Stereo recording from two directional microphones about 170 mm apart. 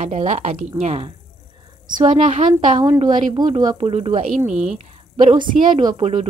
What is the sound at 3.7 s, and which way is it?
Speech, 35° right (ahead or behind).